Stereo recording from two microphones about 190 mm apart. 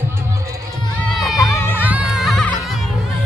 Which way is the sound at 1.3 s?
15° left (ahead or behind).